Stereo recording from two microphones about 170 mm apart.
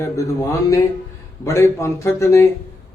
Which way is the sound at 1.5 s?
15° left (ahead or behind).